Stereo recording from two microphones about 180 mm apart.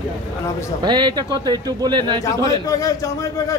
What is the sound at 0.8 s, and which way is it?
Speech, 25° right (ahead or behind).